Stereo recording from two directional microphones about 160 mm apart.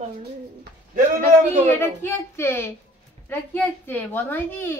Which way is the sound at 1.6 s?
15° left (ahead or behind).